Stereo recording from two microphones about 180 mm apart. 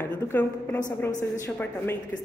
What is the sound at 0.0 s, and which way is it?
A woman's voice, 10° left (ahead or behind).